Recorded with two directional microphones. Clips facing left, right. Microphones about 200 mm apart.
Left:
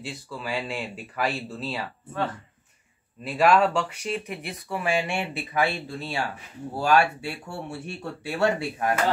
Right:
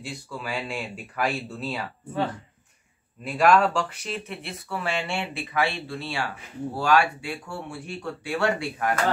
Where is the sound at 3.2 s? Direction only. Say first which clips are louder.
Even; 5° left (ahead or behind).